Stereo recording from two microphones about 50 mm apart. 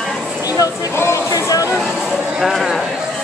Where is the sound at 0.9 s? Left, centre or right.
Left.